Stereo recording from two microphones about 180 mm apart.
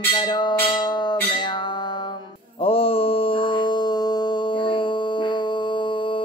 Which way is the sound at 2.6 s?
30° left (ahead or behind).